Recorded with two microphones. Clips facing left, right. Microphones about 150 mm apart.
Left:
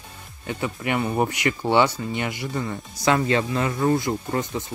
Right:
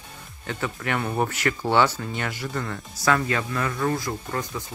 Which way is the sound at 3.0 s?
25° left (ahead or behind).